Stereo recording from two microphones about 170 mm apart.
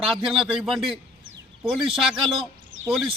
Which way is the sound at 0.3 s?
Centre (ahead or behind).